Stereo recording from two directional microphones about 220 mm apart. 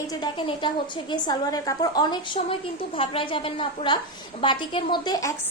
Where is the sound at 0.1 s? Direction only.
20° left (ahead or behind).